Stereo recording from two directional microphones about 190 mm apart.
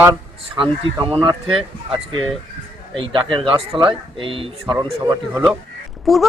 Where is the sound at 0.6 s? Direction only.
25° right (ahead or behind).